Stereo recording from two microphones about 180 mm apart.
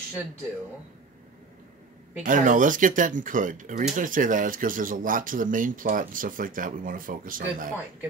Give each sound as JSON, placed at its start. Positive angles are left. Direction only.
{"t": 2.2, "sound": "speech", "side_deg": -45}